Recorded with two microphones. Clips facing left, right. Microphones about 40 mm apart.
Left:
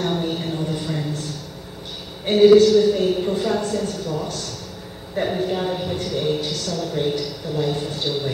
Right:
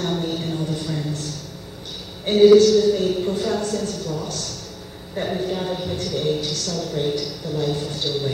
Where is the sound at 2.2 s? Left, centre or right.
Centre.